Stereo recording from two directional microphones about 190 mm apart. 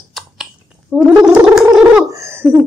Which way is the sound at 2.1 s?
15° right (ahead or behind).